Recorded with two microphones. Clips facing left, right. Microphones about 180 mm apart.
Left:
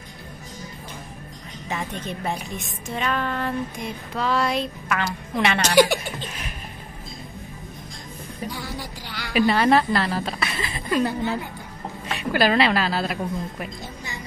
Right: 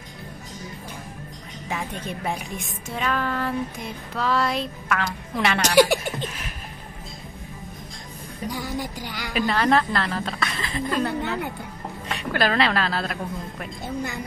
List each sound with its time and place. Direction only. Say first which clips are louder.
1.7 s a woman's voice: left 1 dB; 10° right (ahead or behind)
8.5 s music: right 6 dB; 15° right (ahead or behind)
9.3 s a woman's voice: left 3 dB; 5° left (ahead or behind)
12.2 s a woman's voice: left 3 dB; 5° left (ahead or behind)